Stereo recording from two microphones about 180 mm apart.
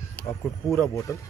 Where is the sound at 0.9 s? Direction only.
20° left (ahead or behind).